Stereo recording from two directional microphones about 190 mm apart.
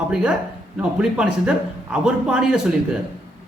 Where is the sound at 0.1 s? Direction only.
5° right (ahead or behind).